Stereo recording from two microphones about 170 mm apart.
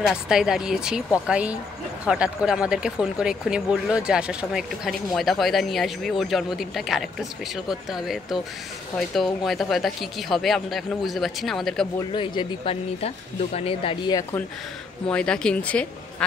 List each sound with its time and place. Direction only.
0.0 s speech: 5° right (ahead or behind)
12.1 s speech: 30° left (ahead or behind)
15.0 s speech: 5° left (ahead or behind)